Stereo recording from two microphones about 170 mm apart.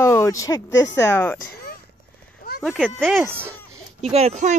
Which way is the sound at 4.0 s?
40° right (ahead or behind).